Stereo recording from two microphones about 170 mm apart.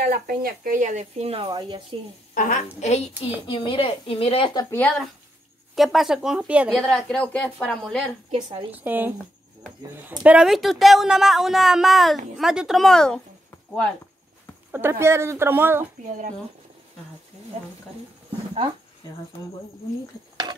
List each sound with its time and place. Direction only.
0.0 s speech: 60° right (ahead or behind); by 2.0 s 30° right (ahead or behind)
2.3 s a woman's voice: 50° left (ahead or behind)
2.8 s a woman's voice: 40° left (ahead or behind)
3.4 s a woman's voice: 30° left (ahead or behind)
4.6 s speech: 15° left (ahead or behind)
5.8 s speech: centre (ahead or behind)
6.9 s speech: 5° left (ahead or behind)
8.4 s a woman's voice: 25° right (ahead or behind)
8.7 s speech: 10° right (ahead or behind)
10.2 s speech: 5° right (ahead or behind)
14.7 s speech: 15° right (ahead or behind)